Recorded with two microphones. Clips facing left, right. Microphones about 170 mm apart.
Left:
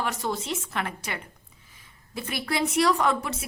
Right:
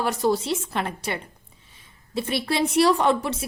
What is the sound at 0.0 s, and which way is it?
A woman's voice, 35° right (ahead or behind).